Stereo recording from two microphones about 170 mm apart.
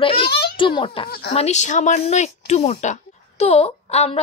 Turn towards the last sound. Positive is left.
turn(degrees=35)  # may be behind; listen again after turning